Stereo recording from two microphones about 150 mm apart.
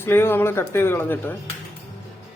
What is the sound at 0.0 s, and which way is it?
A man's voice, 15° left (ahead or behind).